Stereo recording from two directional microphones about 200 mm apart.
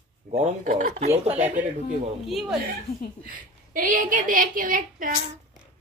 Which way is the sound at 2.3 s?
Centre (ahead or behind).